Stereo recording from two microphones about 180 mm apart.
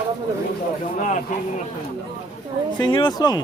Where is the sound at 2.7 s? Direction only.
25° left (ahead or behind).